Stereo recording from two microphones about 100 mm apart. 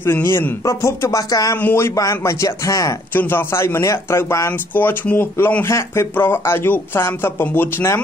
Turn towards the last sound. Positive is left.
turn(degrees=25)  # may be behind; listen again after turning